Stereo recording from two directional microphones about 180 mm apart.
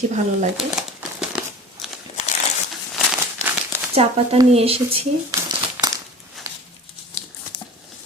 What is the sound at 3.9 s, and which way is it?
Speech, 35° right (ahead or behind).